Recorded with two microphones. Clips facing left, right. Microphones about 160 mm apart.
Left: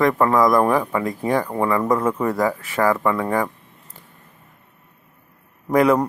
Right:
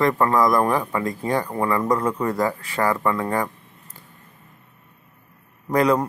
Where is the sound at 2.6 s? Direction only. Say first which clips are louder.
Left 3 dB; 15° left (ahead or behind).